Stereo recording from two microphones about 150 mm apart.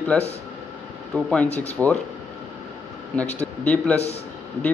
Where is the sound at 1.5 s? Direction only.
45° left (ahead or behind).